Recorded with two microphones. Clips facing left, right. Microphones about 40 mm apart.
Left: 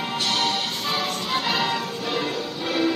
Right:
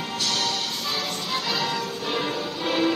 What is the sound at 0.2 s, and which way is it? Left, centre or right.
Music, left.